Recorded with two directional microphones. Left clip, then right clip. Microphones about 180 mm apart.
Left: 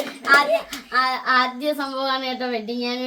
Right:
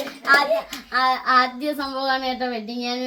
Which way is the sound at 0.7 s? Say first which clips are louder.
Right 1 dB; 20° left (ahead or behind).